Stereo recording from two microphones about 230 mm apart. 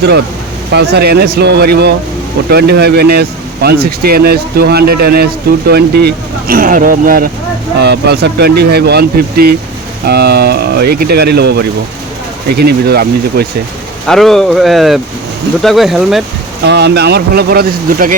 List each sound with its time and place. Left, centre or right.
0.7 s speech: right
14.1 s speech: centre
16.6 s speech: right